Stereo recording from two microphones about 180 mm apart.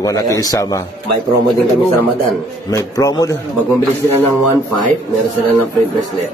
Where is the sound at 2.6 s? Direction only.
20° left (ahead or behind).